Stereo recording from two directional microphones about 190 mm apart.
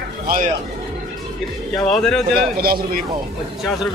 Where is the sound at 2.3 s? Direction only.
55° right (ahead or behind).